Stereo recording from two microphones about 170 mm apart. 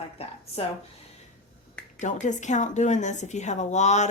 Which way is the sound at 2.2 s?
45° left (ahead or behind).